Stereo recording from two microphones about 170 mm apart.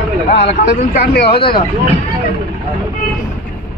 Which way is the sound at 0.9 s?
70° left (ahead or behind).